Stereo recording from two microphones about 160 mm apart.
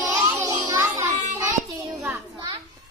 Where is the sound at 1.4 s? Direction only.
20° right (ahead or behind).